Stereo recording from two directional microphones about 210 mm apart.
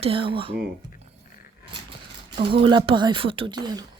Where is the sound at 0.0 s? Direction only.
25° right (ahead or behind).